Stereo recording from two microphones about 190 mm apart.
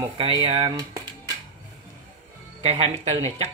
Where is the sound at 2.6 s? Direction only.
30° right (ahead or behind).